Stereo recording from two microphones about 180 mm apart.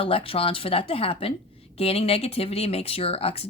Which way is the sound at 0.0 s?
30° left (ahead or behind).